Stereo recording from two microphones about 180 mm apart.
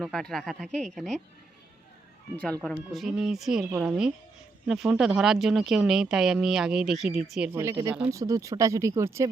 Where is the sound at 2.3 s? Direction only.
5° left (ahead or behind).